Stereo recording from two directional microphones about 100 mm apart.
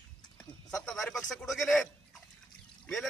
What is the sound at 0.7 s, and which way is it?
A man's voice, 5° left (ahead or behind).